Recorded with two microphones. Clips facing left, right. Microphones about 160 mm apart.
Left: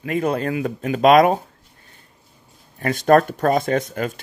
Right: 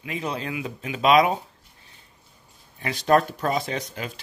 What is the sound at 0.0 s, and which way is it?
Speech, 50° left (ahead or behind).